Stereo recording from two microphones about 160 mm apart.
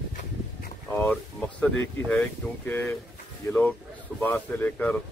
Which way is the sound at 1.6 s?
10° left (ahead or behind).